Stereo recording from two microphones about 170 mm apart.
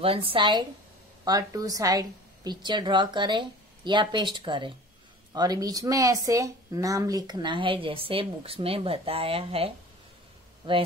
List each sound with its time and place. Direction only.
0.0 s a woman's voice: 35° right (ahead or behind)